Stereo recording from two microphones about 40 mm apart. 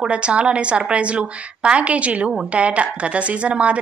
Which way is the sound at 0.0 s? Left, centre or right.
Right.